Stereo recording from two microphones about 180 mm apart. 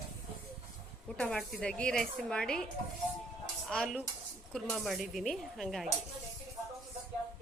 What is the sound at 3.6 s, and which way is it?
Dishes, centre (ahead or behind).